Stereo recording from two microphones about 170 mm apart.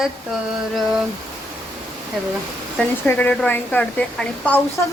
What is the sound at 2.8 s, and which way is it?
A woman's voice, 10° left (ahead or behind).